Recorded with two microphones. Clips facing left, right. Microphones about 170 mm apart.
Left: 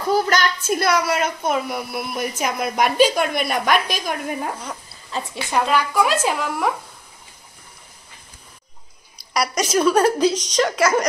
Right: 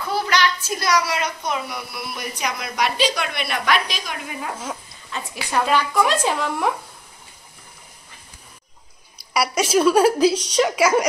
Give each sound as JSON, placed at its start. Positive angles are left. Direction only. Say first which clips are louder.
{"t": 0.0, "sound": "a woman's voice", "louder": "left 3 dB", "side_deg": 45}
{"t": 5.1, "sound": "a woman's voice", "louder": "left 4 dB", "side_deg": 30}
{"t": 5.5, "sound": "speech", "louder": "even", "side_deg": 10}
{"t": 9.3, "sound": "a woman's voice", "louder": "right 1 dB", "side_deg": -5}